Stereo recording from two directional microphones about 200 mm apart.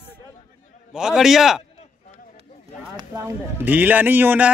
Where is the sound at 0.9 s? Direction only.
Centre (ahead or behind).